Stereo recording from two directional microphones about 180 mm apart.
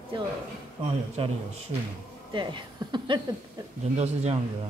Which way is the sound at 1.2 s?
30° right (ahead or behind).